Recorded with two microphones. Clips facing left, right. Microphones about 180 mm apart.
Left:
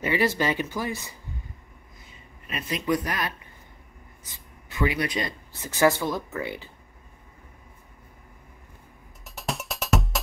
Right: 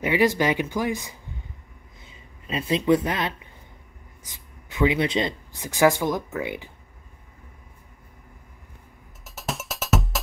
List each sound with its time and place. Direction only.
0.0 s speech: 15° right (ahead or behind)
2.4 s speech: 25° right (ahead or behind)
5.5 s speech: 15° right (ahead or behind)
9.2 s music: centre (ahead or behind)